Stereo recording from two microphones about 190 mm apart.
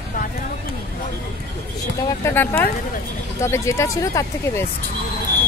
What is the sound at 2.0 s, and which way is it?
Speech, 10° left (ahead or behind).